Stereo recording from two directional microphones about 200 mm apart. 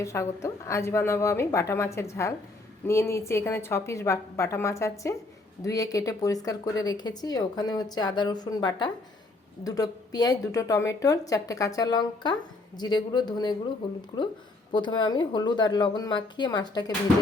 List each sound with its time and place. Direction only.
0.0 s speech: 15° left (ahead or behind)